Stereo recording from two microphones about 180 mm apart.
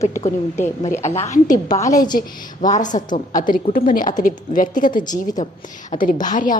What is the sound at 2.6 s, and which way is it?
A woman's voice, 45° left (ahead or behind).